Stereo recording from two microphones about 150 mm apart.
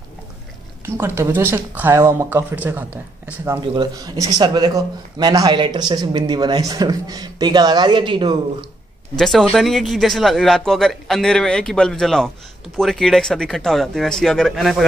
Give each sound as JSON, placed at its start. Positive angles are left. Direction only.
{"t": 0.8, "sound": "speech", "side_deg": -15}
{"t": 3.6, "sound": "a man's voice", "side_deg": -30}
{"t": 9.1, "sound": "speech", "side_deg": 5}